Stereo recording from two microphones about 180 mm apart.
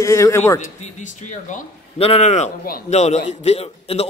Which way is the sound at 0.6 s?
45° left (ahead or behind).